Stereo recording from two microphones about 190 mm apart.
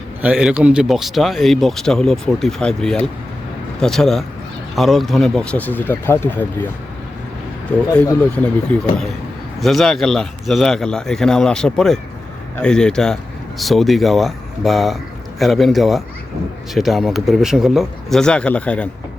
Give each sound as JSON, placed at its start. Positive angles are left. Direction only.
{"t": 0.2, "sound": "speech", "side_deg": -5}
{"t": 8.0, "sound": "speech", "side_deg": 15}